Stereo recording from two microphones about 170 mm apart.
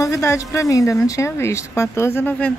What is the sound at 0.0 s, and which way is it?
Speech, 20° left (ahead or behind).